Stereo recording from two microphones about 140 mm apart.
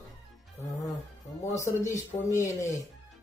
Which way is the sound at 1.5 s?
20° left (ahead or behind).